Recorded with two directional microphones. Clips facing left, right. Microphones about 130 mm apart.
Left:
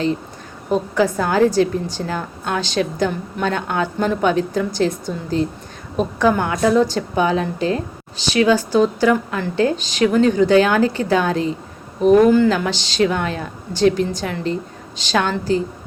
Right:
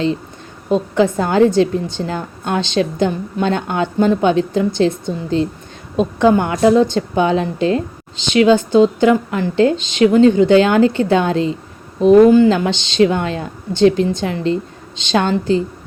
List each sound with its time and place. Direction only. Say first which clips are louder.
0.9 s a woman's voice: right 3 dB; 25° right (ahead or behind)